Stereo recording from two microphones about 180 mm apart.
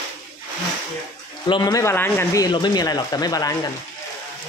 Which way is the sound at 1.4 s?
25° left (ahead or behind).